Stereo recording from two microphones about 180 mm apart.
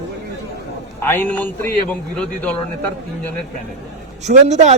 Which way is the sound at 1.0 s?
15° left (ahead or behind).